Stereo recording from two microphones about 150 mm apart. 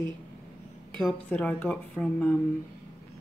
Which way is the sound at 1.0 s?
10° left (ahead or behind).